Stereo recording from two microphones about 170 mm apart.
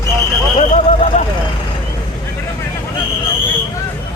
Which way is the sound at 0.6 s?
45° left (ahead or behind).